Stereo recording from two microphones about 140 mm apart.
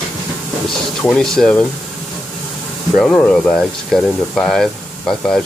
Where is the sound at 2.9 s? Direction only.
5° left (ahead or behind).